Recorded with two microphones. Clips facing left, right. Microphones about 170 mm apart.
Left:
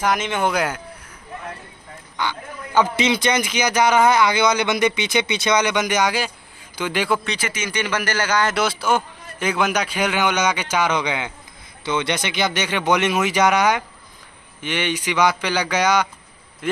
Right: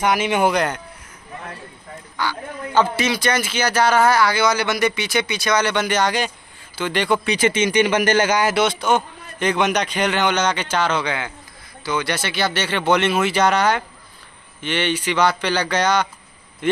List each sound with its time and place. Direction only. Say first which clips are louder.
0.0 s speech: right 3 dB; 10° right (ahead or behind)
0.6 s speech: right 2 dB; 5° left (ahead or behind)
2.1 s a man's voice: right 1 dB; 15° left (ahead or behind)
7.3 s speech: right 9 dB; 25° right (ahead or behind)
8.5 s a man's voice: right 2 dB; 5° left (ahead or behind)